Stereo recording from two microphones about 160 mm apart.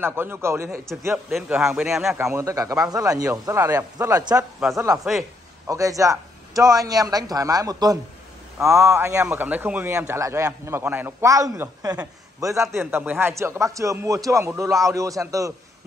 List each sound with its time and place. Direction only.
0.0 s a man's voice: 15° right (ahead or behind)
1.3 s a man's voice: 5° right (ahead or behind)
2.3 s a man's voice: 20° right (ahead or behind)